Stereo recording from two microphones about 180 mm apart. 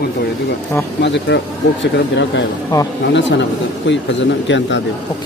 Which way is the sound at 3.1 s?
80° left.